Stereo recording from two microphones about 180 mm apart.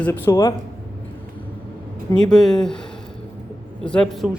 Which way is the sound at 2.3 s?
Centre (ahead or behind).